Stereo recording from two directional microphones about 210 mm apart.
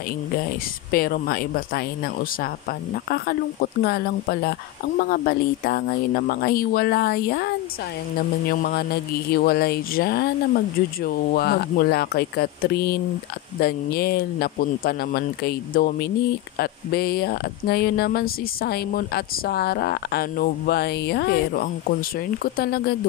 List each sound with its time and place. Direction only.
0.9 s speech: 45° left (ahead or behind)
3.8 s speech: 50° left (ahead or behind)